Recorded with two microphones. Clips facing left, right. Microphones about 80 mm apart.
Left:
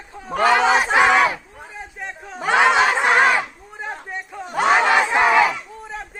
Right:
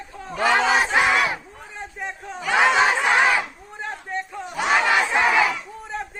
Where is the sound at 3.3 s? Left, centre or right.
Centre.